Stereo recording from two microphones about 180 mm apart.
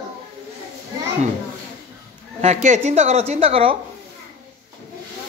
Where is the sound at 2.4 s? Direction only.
40° right (ahead or behind).